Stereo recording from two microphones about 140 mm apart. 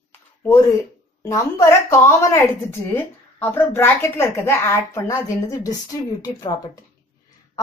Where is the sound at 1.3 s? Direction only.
20° left (ahead or behind).